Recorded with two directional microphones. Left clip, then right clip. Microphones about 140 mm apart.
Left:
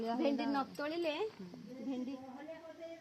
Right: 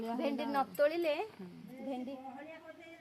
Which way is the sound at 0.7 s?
70° right (ahead or behind).